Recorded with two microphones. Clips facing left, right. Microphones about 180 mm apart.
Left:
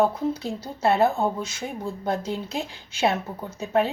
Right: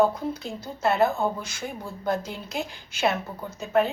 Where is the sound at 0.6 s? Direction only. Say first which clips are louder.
Left 2 dB; 30° left (ahead or behind).